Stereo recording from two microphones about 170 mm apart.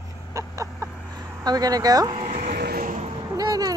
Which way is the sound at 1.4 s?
20° right (ahead or behind).